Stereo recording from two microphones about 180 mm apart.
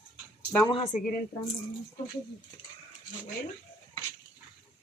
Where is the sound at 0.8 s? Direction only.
45° left (ahead or behind).